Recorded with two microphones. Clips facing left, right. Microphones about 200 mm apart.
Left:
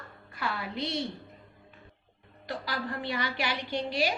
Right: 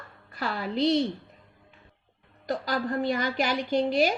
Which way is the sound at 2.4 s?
45° right (ahead or behind).